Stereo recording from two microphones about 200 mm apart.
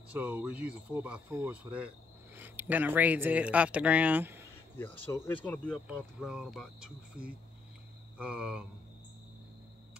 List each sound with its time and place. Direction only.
0.1 s speech: 10° right (ahead or behind)
5.0 s speech: 10° left (ahead or behind)
5.9 s speech: 5° right (ahead or behind)